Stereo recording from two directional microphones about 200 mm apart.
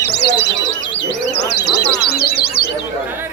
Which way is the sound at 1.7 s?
50° left (ahead or behind).